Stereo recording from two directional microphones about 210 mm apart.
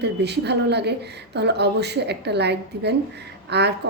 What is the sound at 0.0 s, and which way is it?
Speech, 55° right (ahead or behind).